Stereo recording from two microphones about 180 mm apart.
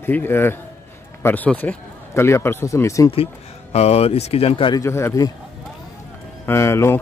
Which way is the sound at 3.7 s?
35° left (ahead or behind).